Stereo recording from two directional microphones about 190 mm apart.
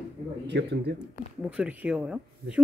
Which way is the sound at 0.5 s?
60° right (ahead or behind).